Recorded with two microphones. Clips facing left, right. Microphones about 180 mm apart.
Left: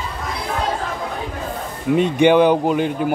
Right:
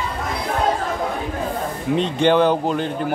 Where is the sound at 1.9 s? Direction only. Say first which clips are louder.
Left 3 dB; 10° left (ahead or behind).